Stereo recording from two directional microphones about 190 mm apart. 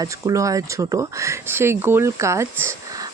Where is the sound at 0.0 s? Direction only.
15° right (ahead or behind).